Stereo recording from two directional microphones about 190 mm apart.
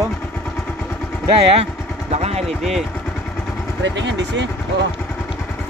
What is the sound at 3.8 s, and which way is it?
Speech, 70° right (ahead or behind).